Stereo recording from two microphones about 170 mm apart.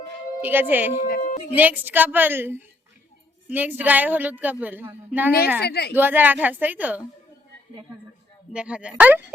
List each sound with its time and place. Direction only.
0.4 s a woman's voice: 10° right (ahead or behind)
1.0 s speech: 55° left (ahead or behind)
1.5 s a woman's voice: 10° right (ahead or behind)
5.6 s a woman's voice: 75° left (ahead or behind)
5.9 s a woman's voice: 10° right (ahead or behind)
8.5 s a woman's voice: 5° right (ahead or behind)